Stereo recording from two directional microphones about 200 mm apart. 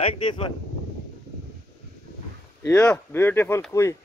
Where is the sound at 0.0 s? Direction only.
25° left (ahead or behind).